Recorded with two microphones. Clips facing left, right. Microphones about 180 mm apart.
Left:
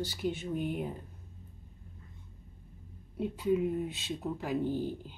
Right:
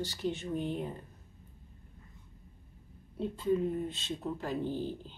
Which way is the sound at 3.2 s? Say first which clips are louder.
Left 1 dB; 10° left (ahead or behind).